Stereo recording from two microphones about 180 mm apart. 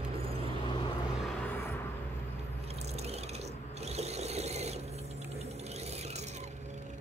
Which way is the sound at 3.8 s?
35° right (ahead or behind).